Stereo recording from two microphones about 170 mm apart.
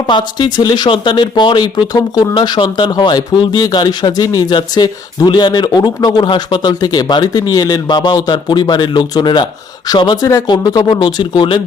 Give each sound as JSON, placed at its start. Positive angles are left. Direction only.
{"t": 0.1, "sound": "speech", "side_deg": 25}